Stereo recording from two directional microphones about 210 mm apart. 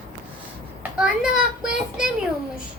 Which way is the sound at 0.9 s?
5° right (ahead or behind).